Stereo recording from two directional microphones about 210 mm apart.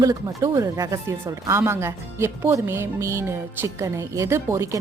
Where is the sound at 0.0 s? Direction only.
15° right (ahead or behind).